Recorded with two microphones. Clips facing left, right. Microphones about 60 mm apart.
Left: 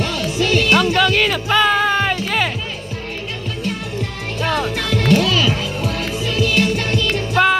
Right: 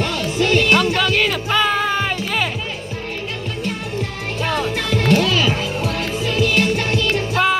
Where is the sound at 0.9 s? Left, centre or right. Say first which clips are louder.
Left 2 dB; left.